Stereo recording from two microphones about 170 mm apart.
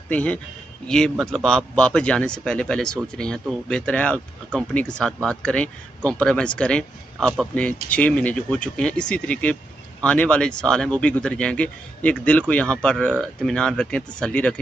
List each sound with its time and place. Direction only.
0.1 s speech: 10° left (ahead or behind)